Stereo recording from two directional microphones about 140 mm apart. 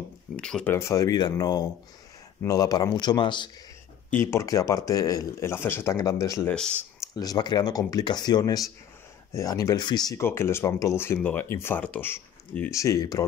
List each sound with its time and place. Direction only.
0.4 s speech: 5° left (ahead or behind)
0.7 s speech: 20° left (ahead or behind)
4.1 s speech: 20° left (ahead or behind)
10.2 s speech: 15° left (ahead or behind)